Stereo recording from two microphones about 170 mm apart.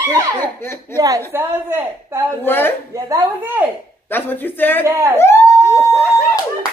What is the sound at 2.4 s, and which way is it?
Speech, 10° left (ahead or behind).